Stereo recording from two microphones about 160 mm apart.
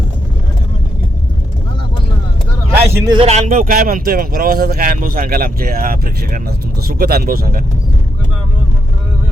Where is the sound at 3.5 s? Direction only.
60° right (ahead or behind).